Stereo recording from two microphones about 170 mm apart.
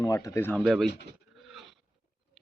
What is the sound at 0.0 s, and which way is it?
Speech, 20° left (ahead or behind).